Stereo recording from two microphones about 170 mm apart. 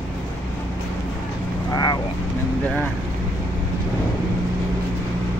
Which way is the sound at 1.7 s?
25° left (ahead or behind).